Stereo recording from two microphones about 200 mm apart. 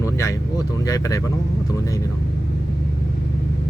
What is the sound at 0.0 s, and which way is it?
Speech, 15° left (ahead or behind).